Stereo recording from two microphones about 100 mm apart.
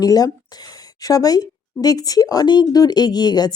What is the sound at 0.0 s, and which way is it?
A woman's voice, 40° left (ahead or behind).